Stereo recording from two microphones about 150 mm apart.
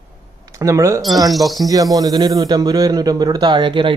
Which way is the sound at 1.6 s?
25° right (ahead or behind).